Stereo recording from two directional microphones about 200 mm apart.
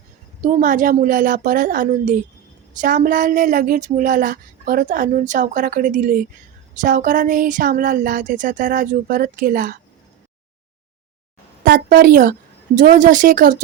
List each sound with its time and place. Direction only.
0.4 s speech: 40° right (ahead or behind)
11.6 s a woman's voice: 45° right (ahead or behind)